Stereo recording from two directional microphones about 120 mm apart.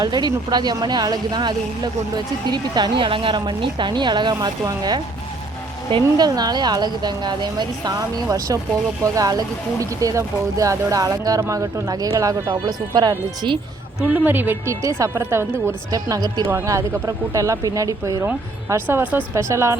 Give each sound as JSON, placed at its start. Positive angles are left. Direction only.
{"t": 0.0, "sound": "a woman's voice", "side_deg": -35}
{"t": 14.1, "sound": "speech", "side_deg": -15}